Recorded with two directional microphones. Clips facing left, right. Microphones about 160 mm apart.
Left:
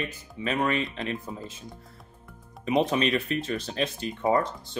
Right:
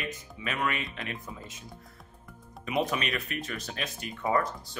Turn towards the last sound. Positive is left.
turn(degrees=25)  # may be behind; listen again after turning